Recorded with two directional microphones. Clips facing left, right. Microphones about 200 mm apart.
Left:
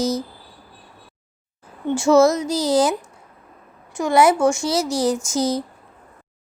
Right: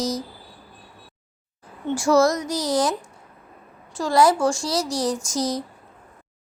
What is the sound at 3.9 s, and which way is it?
Speech, 20° left (ahead or behind).